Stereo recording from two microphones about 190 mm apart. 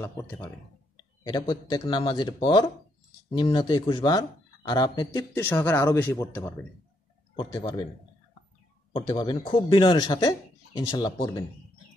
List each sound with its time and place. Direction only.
0.0 s speech: 10° left (ahead or behind)
1.2 s speech: 20° left (ahead or behind)
7.3 s speech: 25° left (ahead or behind)
8.9 s speech: 25° left (ahead or behind)